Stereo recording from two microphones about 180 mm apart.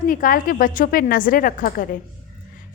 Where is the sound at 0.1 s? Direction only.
50° left (ahead or behind).